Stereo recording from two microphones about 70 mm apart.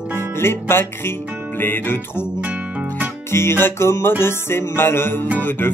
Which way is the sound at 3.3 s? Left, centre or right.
Left.